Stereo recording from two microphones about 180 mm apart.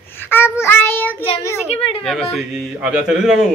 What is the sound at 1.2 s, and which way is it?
Child singing, 30° left (ahead or behind).